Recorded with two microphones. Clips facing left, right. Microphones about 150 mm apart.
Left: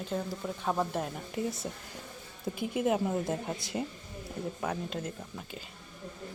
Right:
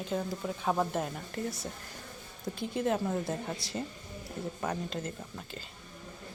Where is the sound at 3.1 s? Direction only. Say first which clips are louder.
Left 1 dB; 15° left (ahead or behind).